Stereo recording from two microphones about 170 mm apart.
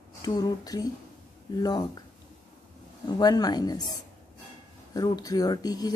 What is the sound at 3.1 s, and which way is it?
Speech, 25° left (ahead or behind).